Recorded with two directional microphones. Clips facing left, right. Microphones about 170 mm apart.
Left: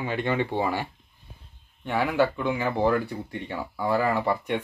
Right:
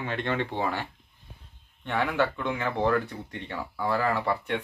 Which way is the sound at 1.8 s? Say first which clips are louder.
Left 3 dB; 10° left (ahead or behind).